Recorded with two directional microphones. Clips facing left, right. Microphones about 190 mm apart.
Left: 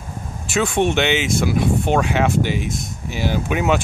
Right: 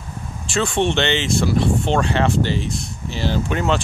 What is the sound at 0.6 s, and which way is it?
Speech, 10° left (ahead or behind).